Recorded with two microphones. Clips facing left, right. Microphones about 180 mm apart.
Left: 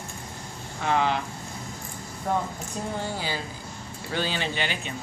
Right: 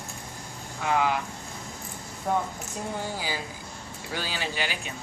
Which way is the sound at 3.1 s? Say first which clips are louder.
Left 1 dB; 10° right (ahead or behind).